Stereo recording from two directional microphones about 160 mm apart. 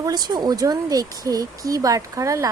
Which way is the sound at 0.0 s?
25° right (ahead or behind).